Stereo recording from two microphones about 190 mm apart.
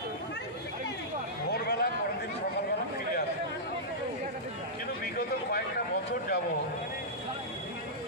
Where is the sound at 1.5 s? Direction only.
60° left (ahead or behind).